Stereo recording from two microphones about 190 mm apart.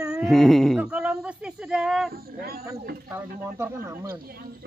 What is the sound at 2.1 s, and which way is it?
Speech, 55° right (ahead or behind).